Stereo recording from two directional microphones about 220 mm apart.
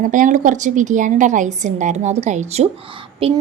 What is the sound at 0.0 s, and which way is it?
A woman's voice, 35° right (ahead or behind).